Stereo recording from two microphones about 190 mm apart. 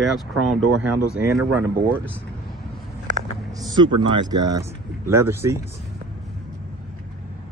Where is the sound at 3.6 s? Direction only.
25° right (ahead or behind).